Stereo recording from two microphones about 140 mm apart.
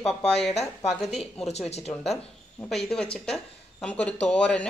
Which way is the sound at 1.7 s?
50° left (ahead or behind).